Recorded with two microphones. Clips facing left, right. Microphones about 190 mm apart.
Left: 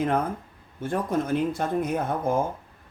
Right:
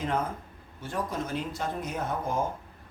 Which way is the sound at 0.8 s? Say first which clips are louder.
Left 7 dB; 55° left (ahead or behind).